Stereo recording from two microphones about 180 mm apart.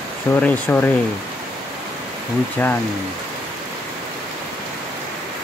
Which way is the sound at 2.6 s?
10° left (ahead or behind).